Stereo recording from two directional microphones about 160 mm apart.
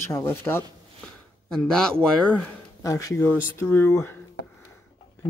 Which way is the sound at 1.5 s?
5° left (ahead or behind).